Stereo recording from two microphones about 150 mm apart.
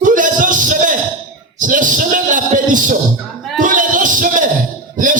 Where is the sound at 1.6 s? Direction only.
60° right (ahead or behind).